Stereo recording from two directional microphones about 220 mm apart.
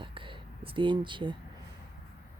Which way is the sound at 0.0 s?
20° right (ahead or behind).